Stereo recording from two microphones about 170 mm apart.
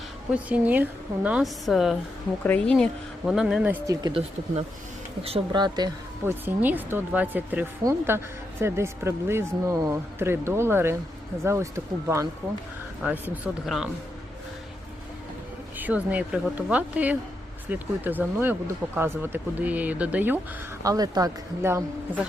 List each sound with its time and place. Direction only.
0.3 s speech: 10° right (ahead or behind)
5.2 s speech: 30° right (ahead or behind)
6.2 s speech: 10° right (ahead or behind)
16.0 s speech: 10° right (ahead or behind)
20.8 s speech: 20° right (ahead or behind)